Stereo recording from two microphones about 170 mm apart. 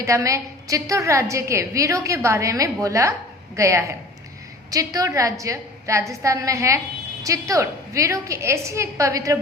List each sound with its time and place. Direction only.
0.0 s a woman's voice: 20° right (ahead or behind)